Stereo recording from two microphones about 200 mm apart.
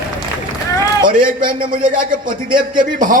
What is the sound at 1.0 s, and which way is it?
Speech, 25° right (ahead or behind).